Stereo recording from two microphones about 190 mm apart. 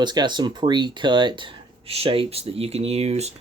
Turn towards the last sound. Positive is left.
turn(degrees=-35)  # may be behind; listen again after turning